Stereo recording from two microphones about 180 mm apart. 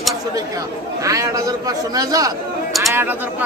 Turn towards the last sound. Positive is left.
turn(degrees=-10)  # may be behind; listen again after turning